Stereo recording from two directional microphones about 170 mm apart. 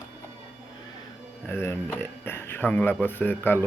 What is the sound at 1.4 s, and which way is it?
Speech, 15° left (ahead or behind).